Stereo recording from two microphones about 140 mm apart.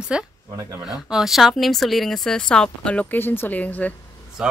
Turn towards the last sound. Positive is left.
turn(degrees=10)  # may be behind; listen again after turning